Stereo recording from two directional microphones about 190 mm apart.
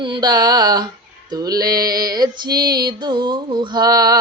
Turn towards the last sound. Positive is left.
turn(degrees=-20)  # may be behind; listen again after turning